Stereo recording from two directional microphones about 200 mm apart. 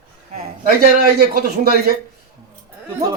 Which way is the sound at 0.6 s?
50° right (ahead or behind).